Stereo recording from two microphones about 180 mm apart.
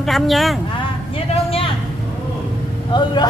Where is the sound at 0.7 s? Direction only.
30° left (ahead or behind).